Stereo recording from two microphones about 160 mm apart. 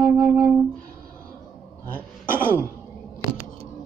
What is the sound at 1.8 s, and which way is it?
Cough, 10° left (ahead or behind).